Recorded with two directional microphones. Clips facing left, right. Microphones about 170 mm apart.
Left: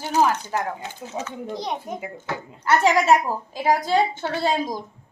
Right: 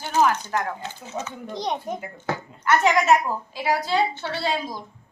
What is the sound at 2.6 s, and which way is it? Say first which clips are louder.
Speech: left 1 dB; 30° left (ahead or behind).